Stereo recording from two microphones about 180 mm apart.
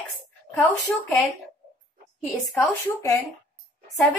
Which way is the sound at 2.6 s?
15° left (ahead or behind).